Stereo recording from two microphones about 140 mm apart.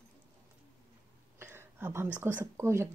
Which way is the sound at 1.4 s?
15° right (ahead or behind).